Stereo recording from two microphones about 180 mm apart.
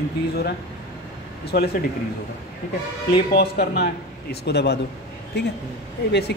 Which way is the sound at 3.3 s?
65° left (ahead or behind).